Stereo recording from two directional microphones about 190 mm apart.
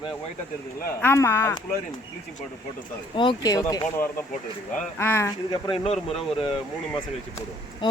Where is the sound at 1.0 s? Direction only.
15° left (ahead or behind).